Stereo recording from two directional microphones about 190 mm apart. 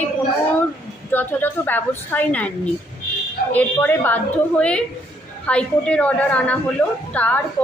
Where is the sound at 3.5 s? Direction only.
10° left (ahead or behind).